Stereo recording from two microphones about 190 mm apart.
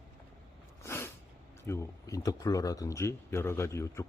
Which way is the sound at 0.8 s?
15° left (ahead or behind).